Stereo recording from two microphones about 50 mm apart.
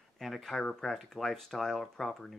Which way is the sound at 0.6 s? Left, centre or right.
Centre.